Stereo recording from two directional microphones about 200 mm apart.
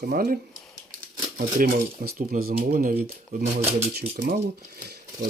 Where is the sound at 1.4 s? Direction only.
40° right (ahead or behind).